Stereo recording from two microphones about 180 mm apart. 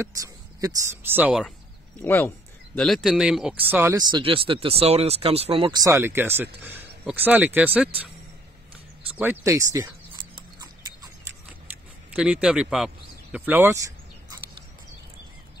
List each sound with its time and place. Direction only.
0.0 s speech: 20° right (ahead or behind)
2.0 s speech: 10° left (ahead or behind); by 4.0 s 10° right (ahead or behind)
4.1 s speech: 30° right (ahead or behind); by 7.9 s 10° right (ahead or behind)
9.1 s speech: 10° right (ahead or behind)
11.4 s a sound: 5° right (ahead or behind)